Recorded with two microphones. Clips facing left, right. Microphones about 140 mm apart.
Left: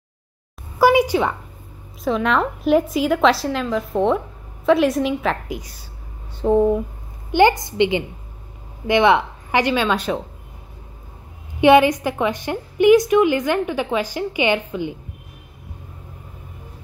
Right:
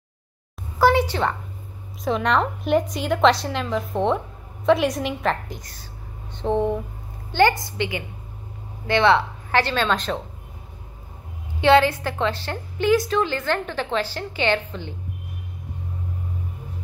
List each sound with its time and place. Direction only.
0.7 s a woman's voice: 10° left (ahead or behind)
7.2 s a woman's voice: 20° left (ahead or behind)
11.6 s a woman's voice: 15° left (ahead or behind)